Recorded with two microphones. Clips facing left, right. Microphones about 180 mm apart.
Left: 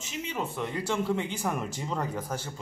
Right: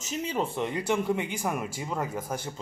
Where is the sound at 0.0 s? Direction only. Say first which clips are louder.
Right 4 dB; 35° right (ahead or behind).